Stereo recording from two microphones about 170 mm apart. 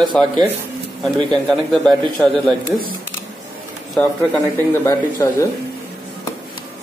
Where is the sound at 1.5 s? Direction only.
5° left (ahead or behind).